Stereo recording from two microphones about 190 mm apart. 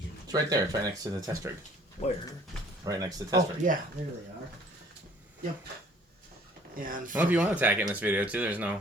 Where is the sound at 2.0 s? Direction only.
30° left (ahead or behind).